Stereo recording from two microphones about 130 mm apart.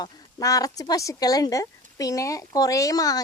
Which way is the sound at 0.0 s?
30° left (ahead or behind).